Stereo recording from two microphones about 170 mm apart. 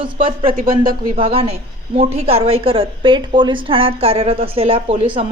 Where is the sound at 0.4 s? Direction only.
55° right (ahead or behind).